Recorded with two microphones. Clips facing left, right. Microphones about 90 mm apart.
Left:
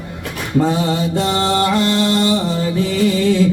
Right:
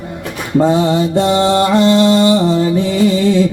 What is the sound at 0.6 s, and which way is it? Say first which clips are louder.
Mantra: right 5 dB; 20° right (ahead or behind).